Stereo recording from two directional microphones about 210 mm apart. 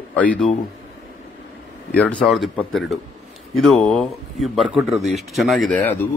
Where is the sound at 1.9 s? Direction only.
5° left (ahead or behind).